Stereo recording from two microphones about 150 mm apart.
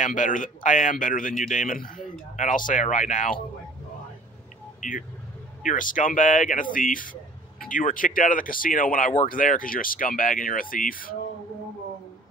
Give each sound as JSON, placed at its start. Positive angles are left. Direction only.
{"t": 0.0, "sound": "speech", "side_deg": 55}
{"t": 4.7, "sound": "speech", "side_deg": 60}